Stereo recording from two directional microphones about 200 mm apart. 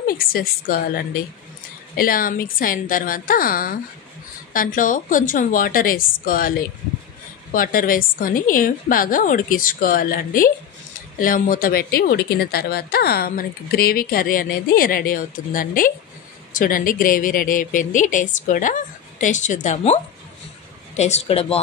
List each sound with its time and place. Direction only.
0.0 s speech: 50° left (ahead or behind)
2.0 s speech: 45° left (ahead or behind)
7.5 s speech: 45° left (ahead or behind)